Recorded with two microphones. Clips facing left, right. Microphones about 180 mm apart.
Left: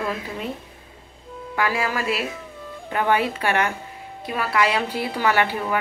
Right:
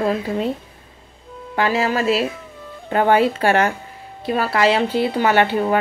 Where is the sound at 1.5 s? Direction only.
25° right (ahead or behind).